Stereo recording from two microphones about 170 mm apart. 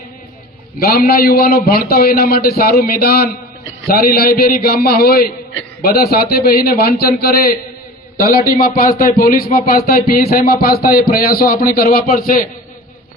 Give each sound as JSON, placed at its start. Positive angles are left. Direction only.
{"t": 0.8, "sound": "a man's voice", "side_deg": 60}